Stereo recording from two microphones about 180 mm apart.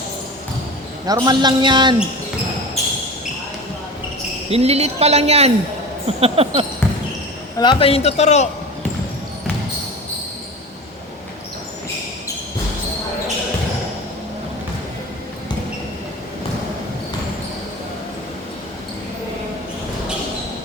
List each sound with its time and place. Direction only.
1.0 s speech: 20° right (ahead or behind)
4.4 s a woman's voice: 35° right (ahead or behind)
7.6 s a man's voice: 30° left (ahead or behind)